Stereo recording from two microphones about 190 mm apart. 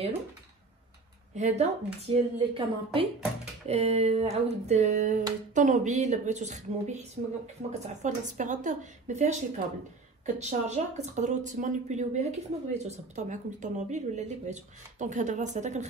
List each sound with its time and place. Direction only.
1.3 s speech: 35° right (ahead or behind)